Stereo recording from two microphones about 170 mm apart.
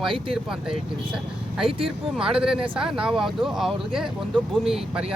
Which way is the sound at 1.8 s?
5° right (ahead or behind).